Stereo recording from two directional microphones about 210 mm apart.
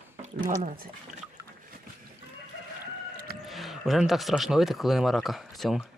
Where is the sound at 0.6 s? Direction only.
35° right (ahead or behind).